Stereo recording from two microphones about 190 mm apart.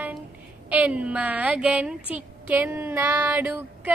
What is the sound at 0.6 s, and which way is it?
Music, 5° right (ahead or behind).